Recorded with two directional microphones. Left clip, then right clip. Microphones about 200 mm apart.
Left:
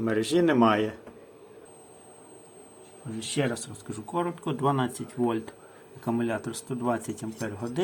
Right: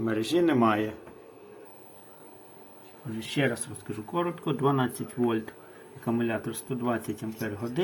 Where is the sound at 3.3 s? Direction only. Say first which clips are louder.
Right 1 dB; 5° left (ahead or behind).